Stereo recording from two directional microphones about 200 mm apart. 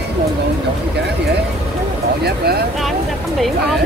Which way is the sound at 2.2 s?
55° right (ahead or behind).